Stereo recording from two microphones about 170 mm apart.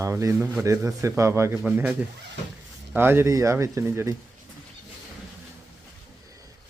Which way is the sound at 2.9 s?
15° right (ahead or behind).